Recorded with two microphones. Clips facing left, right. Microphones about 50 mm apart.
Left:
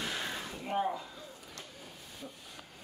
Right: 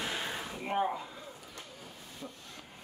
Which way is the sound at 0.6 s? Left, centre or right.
Right.